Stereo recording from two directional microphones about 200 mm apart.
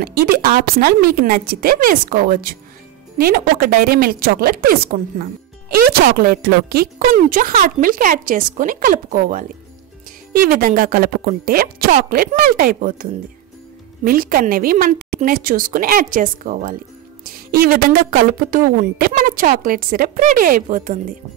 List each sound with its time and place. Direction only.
0.0 s a woman's voice: 45° right (ahead or behind)